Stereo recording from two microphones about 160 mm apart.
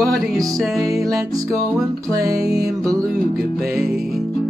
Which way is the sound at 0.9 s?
20° right (ahead or behind).